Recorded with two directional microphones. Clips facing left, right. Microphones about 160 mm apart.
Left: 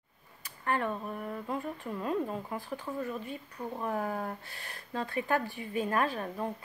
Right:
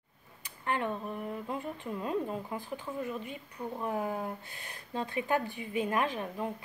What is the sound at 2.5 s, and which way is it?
Speech, 20° right (ahead or behind).